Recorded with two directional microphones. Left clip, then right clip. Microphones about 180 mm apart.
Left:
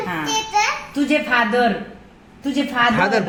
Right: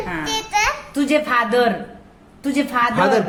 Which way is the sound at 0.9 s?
30° right (ahead or behind).